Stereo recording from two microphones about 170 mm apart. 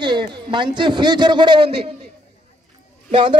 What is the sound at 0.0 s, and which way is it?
A man's voice, 25° right (ahead or behind).